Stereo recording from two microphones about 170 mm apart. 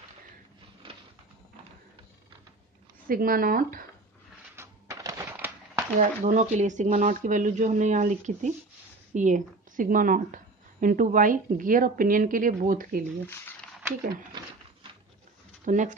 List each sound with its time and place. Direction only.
3.1 s speech: 55° right (ahead or behind)
4.6 s a sound: 15° right (ahead or behind)
5.9 s a woman's voice: 45° right (ahead or behind)
15.6 s speech: 50° right (ahead or behind)